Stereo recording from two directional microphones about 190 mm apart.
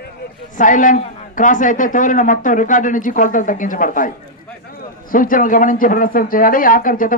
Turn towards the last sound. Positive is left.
turn(degrees=45)  # may be behind; listen again after turning